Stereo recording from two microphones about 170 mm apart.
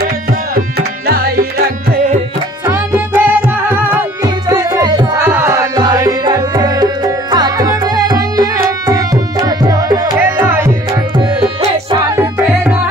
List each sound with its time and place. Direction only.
0.0 s tabla: 60° right (ahead or behind)
2.6 s music: 15° right (ahead or behind)
5.2 s music: 15° right (ahead or behind)
12.2 s music: 10° right (ahead or behind)